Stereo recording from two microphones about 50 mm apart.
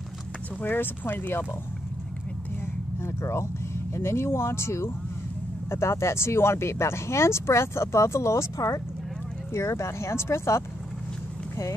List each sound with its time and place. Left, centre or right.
0.6 s speech: left
3.0 s speech: left
9.5 s speech: left